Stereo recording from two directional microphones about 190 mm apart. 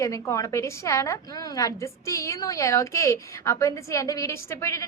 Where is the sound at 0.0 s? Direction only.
15° left (ahead or behind).